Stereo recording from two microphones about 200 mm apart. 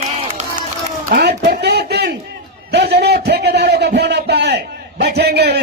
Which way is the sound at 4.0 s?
55° right (ahead or behind).